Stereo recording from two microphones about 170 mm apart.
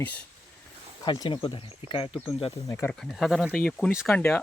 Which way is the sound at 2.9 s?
Centre (ahead or behind).